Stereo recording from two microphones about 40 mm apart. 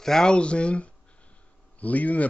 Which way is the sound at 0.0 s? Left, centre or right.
Centre.